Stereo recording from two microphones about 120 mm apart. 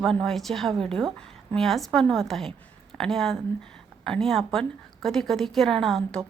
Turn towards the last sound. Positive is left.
turn(degrees=5)  # may be behind; listen again after turning